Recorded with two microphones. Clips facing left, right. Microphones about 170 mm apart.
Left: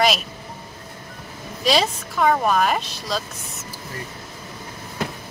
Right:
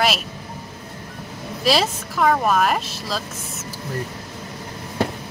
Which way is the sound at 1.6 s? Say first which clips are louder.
Even; centre (ahead or behind).